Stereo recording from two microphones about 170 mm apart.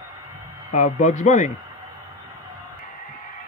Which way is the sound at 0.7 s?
45° left (ahead or behind).